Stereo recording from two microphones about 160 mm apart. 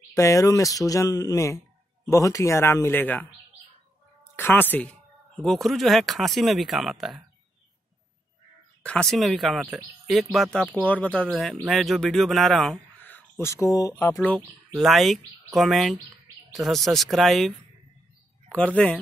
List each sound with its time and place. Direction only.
0.1 s speech: 20° left (ahead or behind)
4.4 s speech: 10° left (ahead or behind)
8.8 s speech: 5° left (ahead or behind)
13.0 s a sound: 15° left (ahead or behind)
13.9 s speech: 15° left (ahead or behind)
14.8 s speech: centre (ahead or behind)